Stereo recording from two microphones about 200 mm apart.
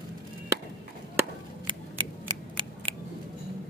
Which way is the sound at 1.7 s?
25° right (ahead or behind).